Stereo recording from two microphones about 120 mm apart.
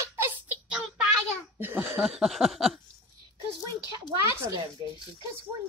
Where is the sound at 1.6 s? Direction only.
15° right (ahead or behind).